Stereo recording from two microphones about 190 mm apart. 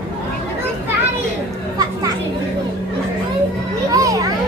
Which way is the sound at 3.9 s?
20° right (ahead or behind).